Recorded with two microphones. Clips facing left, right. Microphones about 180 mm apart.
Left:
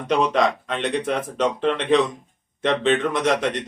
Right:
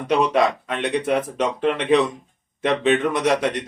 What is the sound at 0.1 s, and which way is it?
Speech, 10° right (ahead or behind).